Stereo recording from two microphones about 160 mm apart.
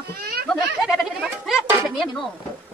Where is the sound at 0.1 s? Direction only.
75° right (ahead or behind).